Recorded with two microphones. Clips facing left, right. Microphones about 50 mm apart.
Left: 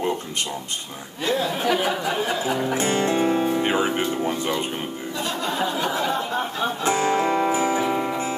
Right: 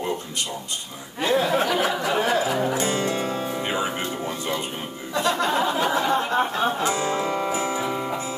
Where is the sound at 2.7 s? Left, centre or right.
Left.